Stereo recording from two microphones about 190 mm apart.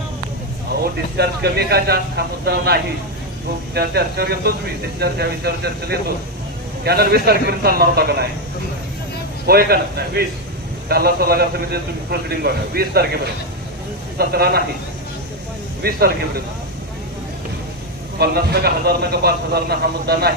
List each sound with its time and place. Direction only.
1.1 s a man's voice: 60° right (ahead or behind)
9.5 s a man's voice: 55° right (ahead or behind)
14.2 s a man's voice: 55° right (ahead or behind)
15.8 s speech: 55° right (ahead or behind)
18.2 s a man's voice: 55° right (ahead or behind)